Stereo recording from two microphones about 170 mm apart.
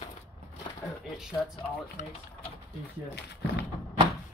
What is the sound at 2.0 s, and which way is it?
Speech, 45° left (ahead or behind).